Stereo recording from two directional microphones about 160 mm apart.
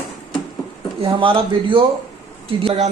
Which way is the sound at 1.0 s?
35° right (ahead or behind).